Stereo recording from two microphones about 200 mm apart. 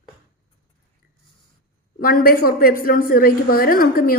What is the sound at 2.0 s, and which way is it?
A woman's voice, 45° left (ahead or behind).